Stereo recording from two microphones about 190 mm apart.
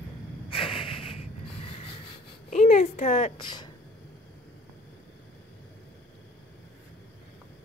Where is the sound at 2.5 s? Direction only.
40° left (ahead or behind).